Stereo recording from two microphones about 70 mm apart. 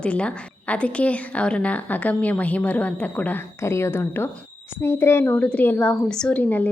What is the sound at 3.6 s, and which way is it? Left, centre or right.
A woman's voice, left.